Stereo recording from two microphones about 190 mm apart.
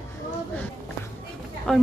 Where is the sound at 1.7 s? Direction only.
5° left (ahead or behind).